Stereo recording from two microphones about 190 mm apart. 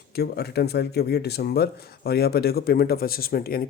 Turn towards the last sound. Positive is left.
turn(degrees=50)  # may be behind; listen again after turning